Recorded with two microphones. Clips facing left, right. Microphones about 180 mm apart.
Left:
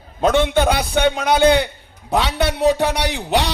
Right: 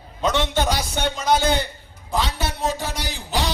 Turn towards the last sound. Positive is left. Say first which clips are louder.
# left 6 dB
turn(degrees=65)  # may be behind; listen again after turning